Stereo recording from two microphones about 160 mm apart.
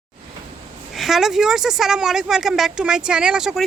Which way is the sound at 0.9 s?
Centre (ahead or behind).